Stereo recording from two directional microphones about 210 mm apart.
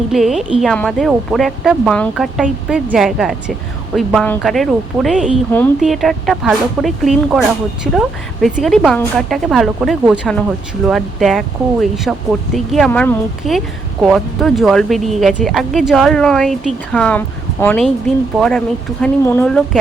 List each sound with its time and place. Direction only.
0.1 s speech: centre (ahead or behind)